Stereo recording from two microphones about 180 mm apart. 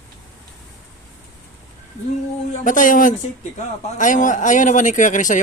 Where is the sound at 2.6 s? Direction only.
45° left (ahead or behind).